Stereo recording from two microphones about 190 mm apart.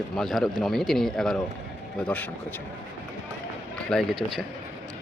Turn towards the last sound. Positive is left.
turn(degrees=0)  # may be behind; listen again after turning